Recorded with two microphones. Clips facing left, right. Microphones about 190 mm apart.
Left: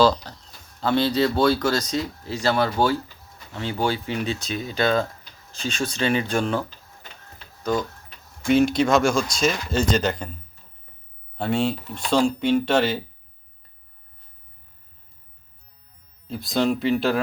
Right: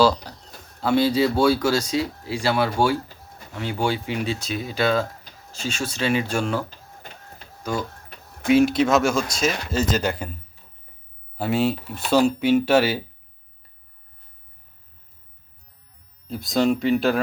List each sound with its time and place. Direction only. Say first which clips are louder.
0.0 s a sound: even; 10° right (ahead or behind)
0.8 s speech: right 1 dB; 10° right (ahead or behind)
6.7 s printer: right 4 dB; 45° right (ahead or behind)
7.6 s speech: left 3 dB; 10° right (ahead or behind)
11.3 s speech: right 1 dB; 5° right (ahead or behind)
16.2 s speech: right 2 dB; centre (ahead or behind)